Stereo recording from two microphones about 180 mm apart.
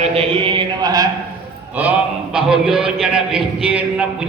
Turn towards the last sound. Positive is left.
turn(degrees=-5)  # may be behind; listen again after turning